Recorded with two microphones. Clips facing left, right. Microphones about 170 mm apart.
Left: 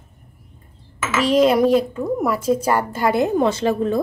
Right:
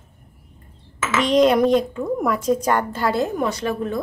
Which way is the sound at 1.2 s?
5° left (ahead or behind).